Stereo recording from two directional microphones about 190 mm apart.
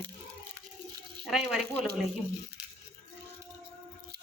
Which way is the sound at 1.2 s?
Centre (ahead or behind).